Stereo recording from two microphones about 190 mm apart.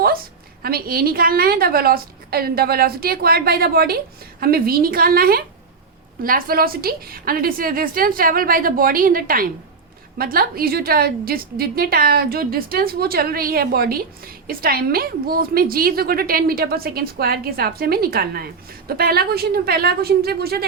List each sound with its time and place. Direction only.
0.0 s a woman's voice: 50° right (ahead or behind)